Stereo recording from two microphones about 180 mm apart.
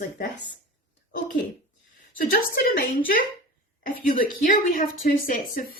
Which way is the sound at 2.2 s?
55° left (ahead or behind).